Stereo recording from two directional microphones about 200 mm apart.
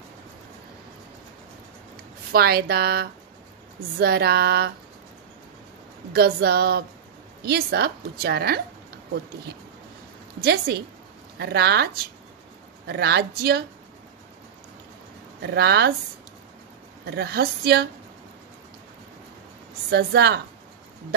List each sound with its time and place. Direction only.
2.3 s a woman's voice: 50° right (ahead or behind)
6.1 s a woman's voice: 50° right (ahead or behind)
10.4 s a woman's voice: 50° right (ahead or behind)
15.4 s speech: 55° right (ahead or behind)
17.0 s a woman's voice: 55° right (ahead or behind)
19.9 s a woman's voice: 55° right (ahead or behind)